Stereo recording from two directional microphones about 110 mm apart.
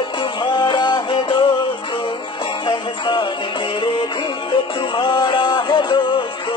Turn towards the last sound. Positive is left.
turn(degrees=45)  # may be behind; listen again after turning